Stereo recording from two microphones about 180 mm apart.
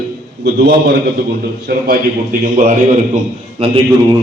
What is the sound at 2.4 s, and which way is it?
Speech, 40° right (ahead or behind).